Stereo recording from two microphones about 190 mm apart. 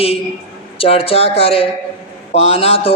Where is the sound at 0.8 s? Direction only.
30° left (ahead or behind).